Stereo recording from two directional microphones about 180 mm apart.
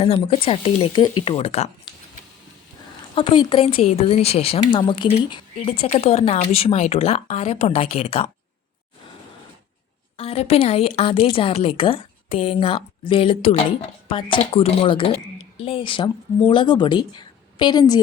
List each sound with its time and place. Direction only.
0.0 s a woman's voice: 30° left (ahead or behind)
3.2 s a woman's voice: 25° left (ahead or behind)
10.2 s a woman's voice: 35° left (ahead or behind)